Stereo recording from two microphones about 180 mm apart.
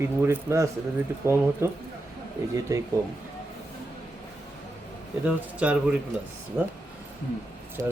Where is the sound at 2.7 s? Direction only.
15° right (ahead or behind).